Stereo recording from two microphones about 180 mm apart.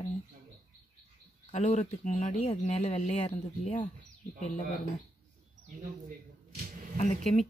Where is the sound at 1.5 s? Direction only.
40° left (ahead or behind).